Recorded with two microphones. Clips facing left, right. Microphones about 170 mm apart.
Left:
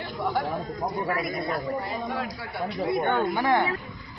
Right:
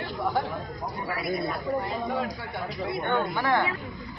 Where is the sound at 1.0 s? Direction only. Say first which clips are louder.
Left 1 dB; 45° left (ahead or behind).